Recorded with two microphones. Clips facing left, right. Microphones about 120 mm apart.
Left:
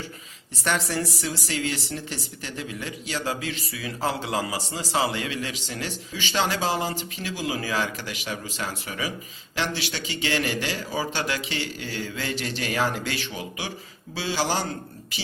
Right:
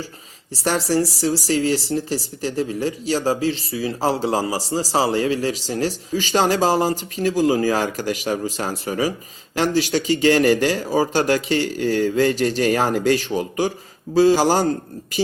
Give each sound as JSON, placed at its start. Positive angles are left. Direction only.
{"t": 0.5, "sound": "speech", "side_deg": -35}